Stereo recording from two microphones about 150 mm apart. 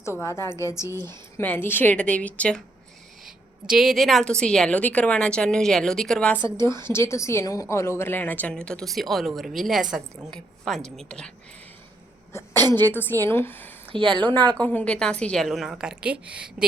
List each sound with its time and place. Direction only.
0.0 s a woman's voice: 20° left (ahead or behind)
0.9 s speech: 30° right (ahead or behind)
1.4 s a woman's voice: 15° left (ahead or behind)
3.2 s a woman's voice: centre (ahead or behind)
12.6 s a woman's voice: 15° left (ahead or behind)
13.9 s speech: 35° right (ahead or behind)
14.6 s a woman's voice: 10° left (ahead or behind); by 16.6 s 5° right (ahead or behind)